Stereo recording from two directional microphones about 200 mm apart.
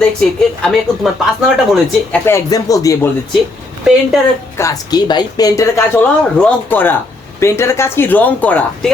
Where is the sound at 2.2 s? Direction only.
15° left (ahead or behind).